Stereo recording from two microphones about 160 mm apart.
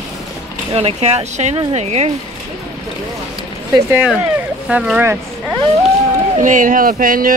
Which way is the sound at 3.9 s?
10° right (ahead or behind).